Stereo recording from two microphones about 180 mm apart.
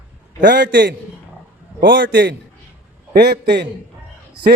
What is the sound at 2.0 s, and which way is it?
Speech, 85° right.